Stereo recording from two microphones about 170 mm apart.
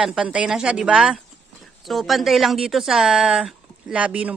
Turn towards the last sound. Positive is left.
turn(degrees=-10)  # may be behind; listen again after turning